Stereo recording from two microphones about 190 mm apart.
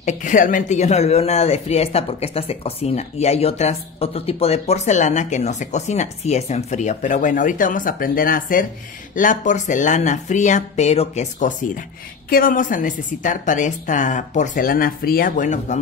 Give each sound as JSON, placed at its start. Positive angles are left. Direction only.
{"t": 0.0, "sound": "a woman's voice", "side_deg": 40}